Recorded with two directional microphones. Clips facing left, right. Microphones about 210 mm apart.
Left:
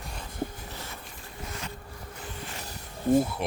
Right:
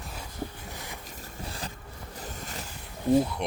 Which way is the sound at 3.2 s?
5° left (ahead or behind).